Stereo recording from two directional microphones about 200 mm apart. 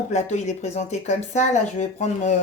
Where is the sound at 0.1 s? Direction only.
35° left (ahead or behind).